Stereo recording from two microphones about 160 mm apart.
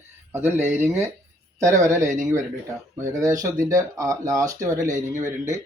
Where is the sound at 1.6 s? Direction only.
20° right (ahead or behind).